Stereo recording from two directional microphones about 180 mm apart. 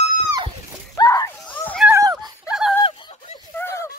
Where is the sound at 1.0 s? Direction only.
20° left (ahead or behind).